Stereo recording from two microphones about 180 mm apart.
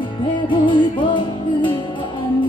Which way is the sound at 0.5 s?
25° left (ahead or behind).